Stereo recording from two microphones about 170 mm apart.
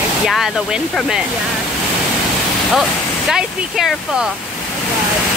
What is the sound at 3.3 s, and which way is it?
Speech, 5° right (ahead or behind).